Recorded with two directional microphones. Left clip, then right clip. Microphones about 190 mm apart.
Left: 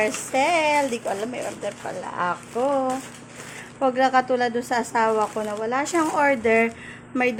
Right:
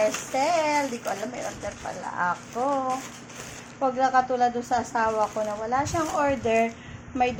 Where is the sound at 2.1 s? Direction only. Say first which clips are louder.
Left 2 dB; 45° left (ahead or behind).